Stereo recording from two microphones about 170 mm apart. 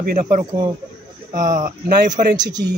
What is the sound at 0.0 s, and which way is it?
Speech, 50° right (ahead or behind).